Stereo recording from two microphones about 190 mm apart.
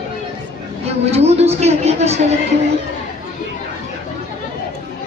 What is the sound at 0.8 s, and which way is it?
A woman's voice, 35° right (ahead or behind).